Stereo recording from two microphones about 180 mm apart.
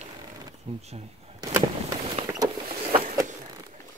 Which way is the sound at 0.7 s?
30° right (ahead or behind).